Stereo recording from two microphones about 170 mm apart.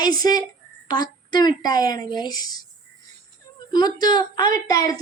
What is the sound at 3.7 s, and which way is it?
A woman's voice, 25° left (ahead or behind).